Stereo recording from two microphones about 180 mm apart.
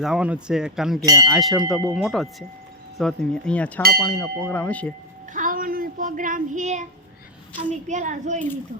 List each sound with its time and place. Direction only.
0.0 s speech: 5° right (ahead or behind)
1.0 s speech: 20° right (ahead or behind)
1.3 s speech: centre (ahead or behind)
4.0 s a sound: 10° left (ahead or behind)
5.3 s child singing: 45° right (ahead or behind)
7.7 s a woman's voice: 40° right (ahead or behind)